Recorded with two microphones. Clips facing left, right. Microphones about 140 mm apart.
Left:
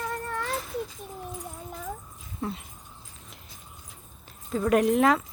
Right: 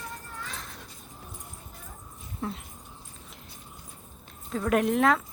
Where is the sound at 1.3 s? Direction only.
90° left.